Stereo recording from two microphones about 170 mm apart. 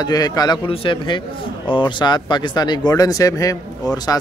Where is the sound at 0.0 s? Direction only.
25° left (ahead or behind).